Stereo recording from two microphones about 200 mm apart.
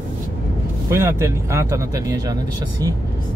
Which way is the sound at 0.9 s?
15° right (ahead or behind).